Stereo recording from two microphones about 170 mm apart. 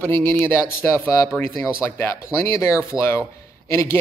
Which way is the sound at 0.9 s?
20° left (ahead or behind).